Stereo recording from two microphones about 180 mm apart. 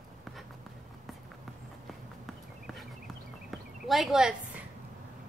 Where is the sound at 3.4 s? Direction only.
Centre (ahead or behind).